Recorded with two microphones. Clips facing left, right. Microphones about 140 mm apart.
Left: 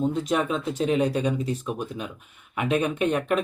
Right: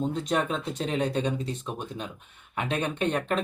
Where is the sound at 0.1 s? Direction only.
5° left (ahead or behind).